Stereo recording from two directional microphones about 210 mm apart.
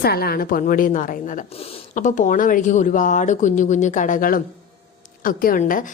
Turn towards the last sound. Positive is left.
turn(degrees=40)  # may be behind; listen again after turning